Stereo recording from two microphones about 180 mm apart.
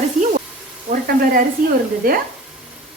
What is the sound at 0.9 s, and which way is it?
Frying, 55° right (ahead or behind).